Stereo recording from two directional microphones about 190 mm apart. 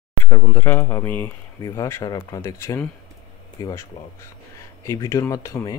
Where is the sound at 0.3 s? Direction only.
10° left (ahead or behind).